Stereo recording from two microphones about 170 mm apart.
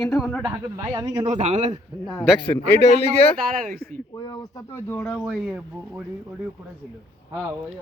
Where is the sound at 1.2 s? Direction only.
45° right (ahead or behind).